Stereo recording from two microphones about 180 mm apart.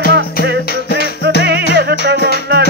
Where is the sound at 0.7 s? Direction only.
60° left (ahead or behind).